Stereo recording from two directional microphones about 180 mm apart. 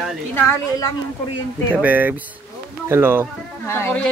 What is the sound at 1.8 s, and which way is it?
Speech, 10° right (ahead or behind).